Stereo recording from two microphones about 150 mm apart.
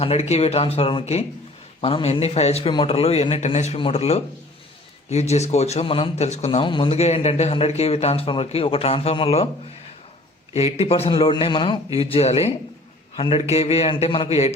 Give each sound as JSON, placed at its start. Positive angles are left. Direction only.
{"t": 0.0, "sound": "a man's voice", "side_deg": 45}
{"t": 6.6, "sound": "speech", "side_deg": 35}
{"t": 10.5, "sound": "a man's voice", "side_deg": 45}